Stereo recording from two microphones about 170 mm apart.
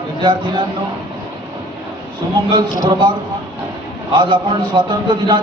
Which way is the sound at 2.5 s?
25° right (ahead or behind).